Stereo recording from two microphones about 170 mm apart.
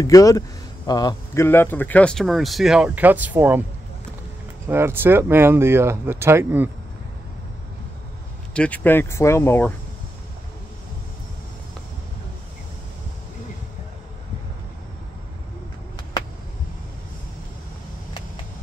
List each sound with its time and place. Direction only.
0.0 s speech: 20° left (ahead or behind); by 3.6 s 10° right (ahead or behind)
4.6 s speech: 15° right (ahead or behind)
8.5 s speech: 10° left (ahead or behind)